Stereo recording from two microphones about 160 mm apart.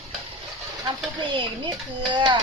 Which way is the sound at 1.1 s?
30° right (ahead or behind).